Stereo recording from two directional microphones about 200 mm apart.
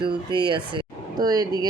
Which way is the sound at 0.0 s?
25° right (ahead or behind).